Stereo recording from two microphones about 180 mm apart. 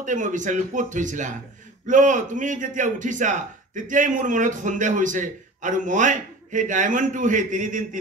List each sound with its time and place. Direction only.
0.0 s a man's voice: 45° right (ahead or behind)